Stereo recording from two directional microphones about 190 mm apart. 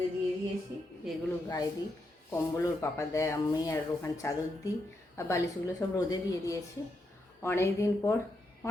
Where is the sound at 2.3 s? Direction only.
15° left (ahead or behind).